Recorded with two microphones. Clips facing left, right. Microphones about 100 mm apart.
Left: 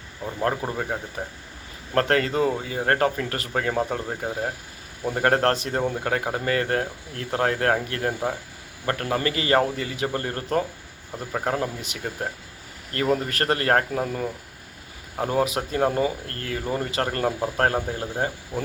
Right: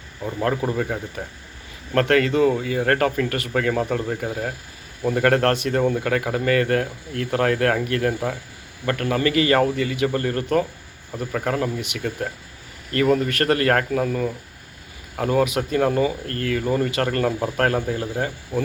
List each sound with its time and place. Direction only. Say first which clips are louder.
0.4 s speech: right 3 dB; 25° left (ahead or behind)